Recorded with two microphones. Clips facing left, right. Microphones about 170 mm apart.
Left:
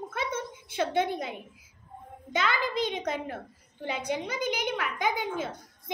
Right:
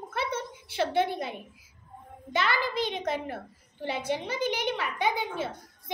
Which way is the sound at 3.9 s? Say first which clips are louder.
Right 1 dB; 15° left (ahead or behind).